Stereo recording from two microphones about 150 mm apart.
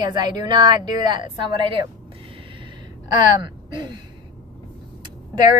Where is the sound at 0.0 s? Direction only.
30° right (ahead or behind).